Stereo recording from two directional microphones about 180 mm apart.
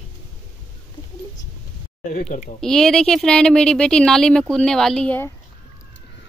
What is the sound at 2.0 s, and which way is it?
Speech, 50° left (ahead or behind).